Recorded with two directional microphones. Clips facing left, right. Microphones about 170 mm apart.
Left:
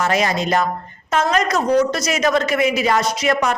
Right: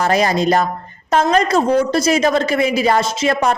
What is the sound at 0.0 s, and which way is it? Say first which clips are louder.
A woman's voice: right 4 dB; 35° right (ahead or behind).